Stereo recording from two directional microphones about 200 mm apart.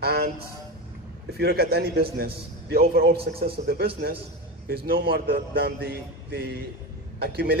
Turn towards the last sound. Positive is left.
turn(degrees=-50)  # may be behind; listen again after turning